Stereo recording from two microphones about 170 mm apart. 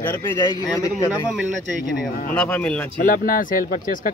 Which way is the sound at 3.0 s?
55° left (ahead or behind).